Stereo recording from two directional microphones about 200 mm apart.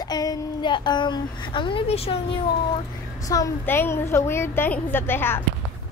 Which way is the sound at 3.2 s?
15° left (ahead or behind).